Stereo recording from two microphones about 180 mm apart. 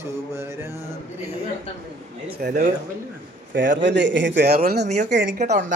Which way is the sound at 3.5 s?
80° right.